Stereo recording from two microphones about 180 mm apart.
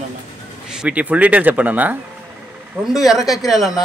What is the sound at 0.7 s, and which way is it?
A man's voice, 5° right (ahead or behind).